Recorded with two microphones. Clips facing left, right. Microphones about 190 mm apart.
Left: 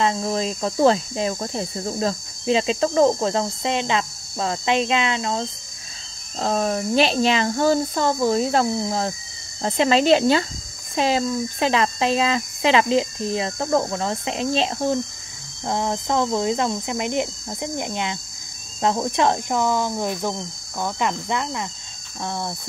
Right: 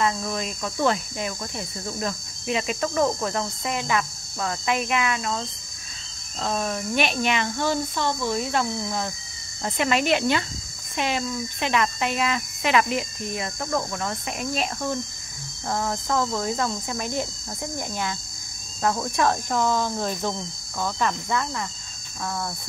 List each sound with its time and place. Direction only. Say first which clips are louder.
0.0 s speech: left 4 dB; 30° left (ahead or behind)
6.4 s speech: left 5 dB; 35° left (ahead or behind)